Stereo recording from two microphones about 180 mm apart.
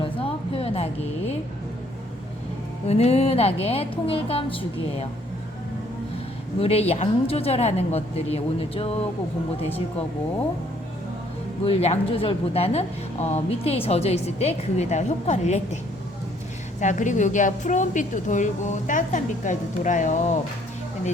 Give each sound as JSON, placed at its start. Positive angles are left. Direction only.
{"t": 0.0, "sound": "a sound", "side_deg": 30}
{"t": 2.8, "sound": "a woman's voice", "side_deg": 35}
{"t": 6.6, "sound": "a woman's voice", "side_deg": 35}
{"t": 11.6, "sound": "a woman's voice", "side_deg": 35}
{"t": 16.8, "sound": "a woman's voice", "side_deg": 45}